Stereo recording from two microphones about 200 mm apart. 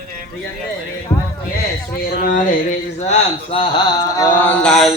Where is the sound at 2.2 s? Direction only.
45° left (ahead or behind).